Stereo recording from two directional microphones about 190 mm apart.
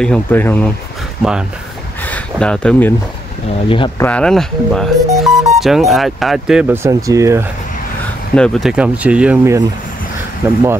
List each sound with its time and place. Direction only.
0.0 s speech: 5° left (ahead or behind)
2.0 s a sound: 5° left (ahead or behind)
3.6 s speech: 25° left (ahead or behind)
4.0 s speech: 5° left (ahead or behind); by 7.4 s 15° right (ahead or behind)
8.4 s speech: centre (ahead or behind)